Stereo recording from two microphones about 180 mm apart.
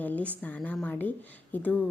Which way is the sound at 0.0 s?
10° left (ahead or behind).